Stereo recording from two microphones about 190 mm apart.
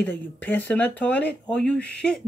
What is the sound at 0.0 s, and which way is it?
Speech, 10° left (ahead or behind).